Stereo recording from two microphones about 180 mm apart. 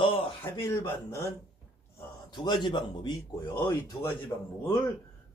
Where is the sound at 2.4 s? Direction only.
25° left (ahead or behind).